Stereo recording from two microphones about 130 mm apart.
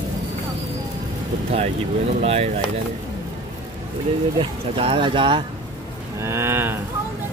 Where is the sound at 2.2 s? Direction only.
50° right (ahead or behind).